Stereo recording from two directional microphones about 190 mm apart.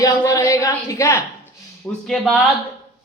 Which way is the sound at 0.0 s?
15° left (ahead or behind).